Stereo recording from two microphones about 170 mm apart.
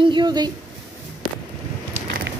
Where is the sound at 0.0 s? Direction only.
25° right (ahead or behind).